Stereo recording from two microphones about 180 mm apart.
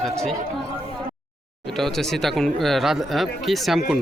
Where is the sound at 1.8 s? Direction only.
Centre (ahead or behind).